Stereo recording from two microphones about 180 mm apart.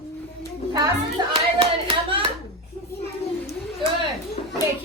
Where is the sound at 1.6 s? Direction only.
30° right (ahead or behind).